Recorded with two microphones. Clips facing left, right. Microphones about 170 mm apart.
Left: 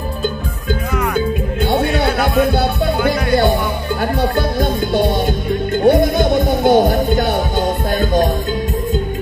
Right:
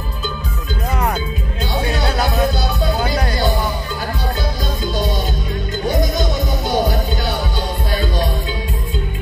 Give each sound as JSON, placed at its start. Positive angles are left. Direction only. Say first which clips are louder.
{"t": 1.1, "sound": "music", "louder": "left 7 dB", "side_deg": 55}